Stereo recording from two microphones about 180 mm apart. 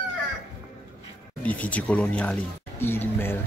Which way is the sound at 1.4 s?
10° left (ahead or behind).